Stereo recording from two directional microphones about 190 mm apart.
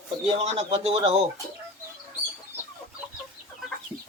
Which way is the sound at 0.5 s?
30° right (ahead or behind).